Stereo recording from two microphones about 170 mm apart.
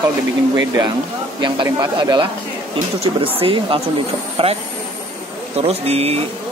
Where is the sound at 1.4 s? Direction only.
25° right (ahead or behind).